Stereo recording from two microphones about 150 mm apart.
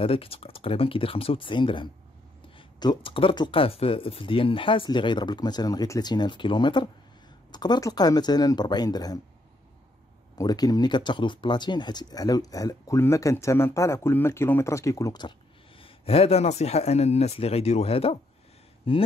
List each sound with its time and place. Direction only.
0.0 s speech: 40° left (ahead or behind)
10.3 s speech: 25° left (ahead or behind)
15.8 s speech: 40° left (ahead or behind)